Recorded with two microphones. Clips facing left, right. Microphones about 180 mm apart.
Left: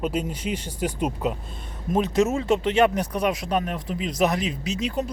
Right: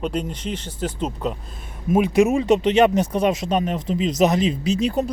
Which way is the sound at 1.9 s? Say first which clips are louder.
Right 5 dB; 10° right (ahead or behind).